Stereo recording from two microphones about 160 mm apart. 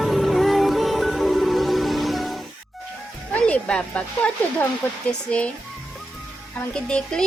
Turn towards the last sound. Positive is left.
turn(degrees=5)  # may be behind; listen again after turning